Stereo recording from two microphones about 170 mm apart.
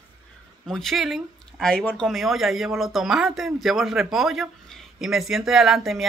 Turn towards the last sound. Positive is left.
turn(degrees=0)  # may be behind; listen again after turning